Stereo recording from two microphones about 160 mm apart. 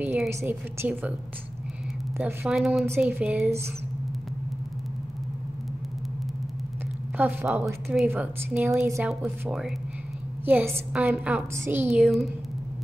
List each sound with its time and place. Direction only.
0.0 s a woman's voice: 10° right (ahead or behind)
2.1 s a woman's voice: 5° right (ahead or behind)
3.4 s a woman's voice: 15° right (ahead or behind)
7.2 s a woman's voice: 10° right (ahead or behind)
8.8 s a woman's voice: 20° right (ahead or behind)
9.2 s a woman's voice: 5° right (ahead or behind)
11.9 s a woman's voice: centre (ahead or behind)